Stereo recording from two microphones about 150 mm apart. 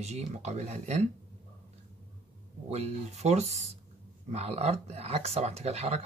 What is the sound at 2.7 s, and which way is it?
Speech, 45° right (ahead or behind).